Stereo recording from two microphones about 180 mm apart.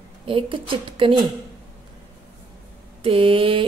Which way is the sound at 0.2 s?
30° right (ahead or behind).